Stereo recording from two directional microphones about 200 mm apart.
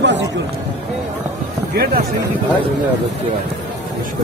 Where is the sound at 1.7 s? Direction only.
50° right (ahead or behind).